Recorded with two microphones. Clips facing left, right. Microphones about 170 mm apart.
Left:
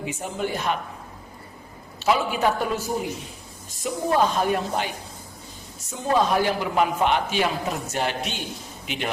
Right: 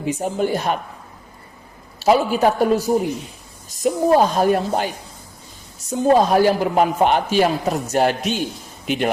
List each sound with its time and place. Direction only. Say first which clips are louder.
0.0 s a woman's voice: right 7 dB; 40° right (ahead or behind)
2.0 s a woman's voice: right 6 dB; 40° right (ahead or behind)
3.8 s a woman's voice: right 6 dB; 40° right (ahead or behind)
5.9 s a woman's voice: right 7 dB; 40° right (ahead or behind)